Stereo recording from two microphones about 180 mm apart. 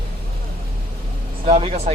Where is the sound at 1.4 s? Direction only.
35° right (ahead or behind).